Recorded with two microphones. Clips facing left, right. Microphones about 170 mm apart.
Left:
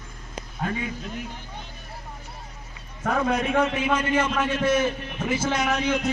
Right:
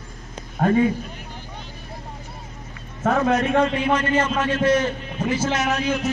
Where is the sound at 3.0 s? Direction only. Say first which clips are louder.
Right 4 dB; 45° right (ahead or behind).